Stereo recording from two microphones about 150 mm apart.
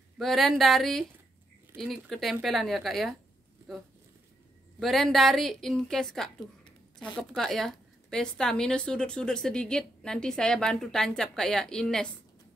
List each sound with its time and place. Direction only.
0.2 s a woman's voice: centre (ahead or behind)